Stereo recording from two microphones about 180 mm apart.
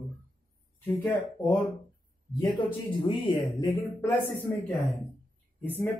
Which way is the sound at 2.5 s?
25° left (ahead or behind).